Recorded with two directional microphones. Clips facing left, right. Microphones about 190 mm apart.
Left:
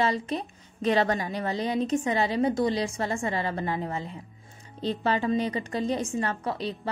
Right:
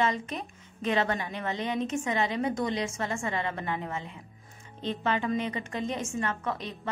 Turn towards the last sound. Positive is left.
turn(degrees=30)  # may be behind; listen again after turning